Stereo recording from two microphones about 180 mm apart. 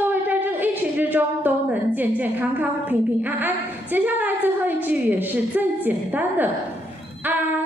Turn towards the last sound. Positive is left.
turn(degrees=-10)  # may be behind; listen again after turning